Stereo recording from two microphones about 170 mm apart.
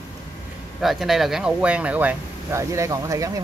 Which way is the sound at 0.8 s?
Centre (ahead or behind).